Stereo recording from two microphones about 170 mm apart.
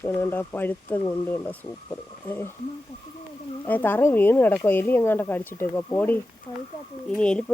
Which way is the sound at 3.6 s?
10° left (ahead or behind).